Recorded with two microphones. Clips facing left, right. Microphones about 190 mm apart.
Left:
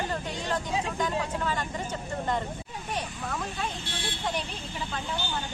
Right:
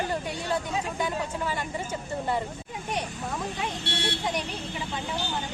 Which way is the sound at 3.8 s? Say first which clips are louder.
Right 5 dB; 70° right (ahead or behind).